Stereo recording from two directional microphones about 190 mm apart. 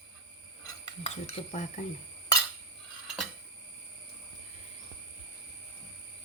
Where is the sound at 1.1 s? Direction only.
35° left (ahead or behind).